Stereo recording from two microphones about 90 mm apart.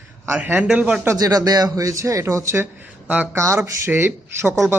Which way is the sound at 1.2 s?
45° right (ahead or behind).